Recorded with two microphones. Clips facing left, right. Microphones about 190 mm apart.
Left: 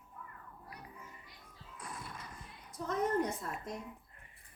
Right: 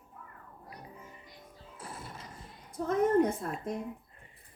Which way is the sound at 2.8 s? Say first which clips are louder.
Right 7 dB; 55° right (ahead or behind).